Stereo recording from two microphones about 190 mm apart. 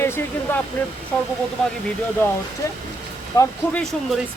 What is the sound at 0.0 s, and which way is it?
Speech, 10° left (ahead or behind).